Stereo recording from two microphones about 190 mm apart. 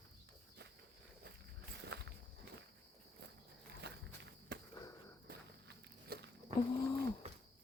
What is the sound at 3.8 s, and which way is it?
Walk, 65° right (ahead or behind).